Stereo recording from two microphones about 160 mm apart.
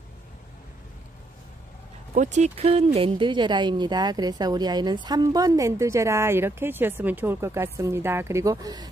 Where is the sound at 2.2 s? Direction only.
45° right (ahead or behind).